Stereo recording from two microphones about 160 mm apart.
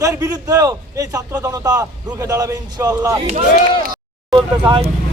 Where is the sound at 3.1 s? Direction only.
40° right (ahead or behind).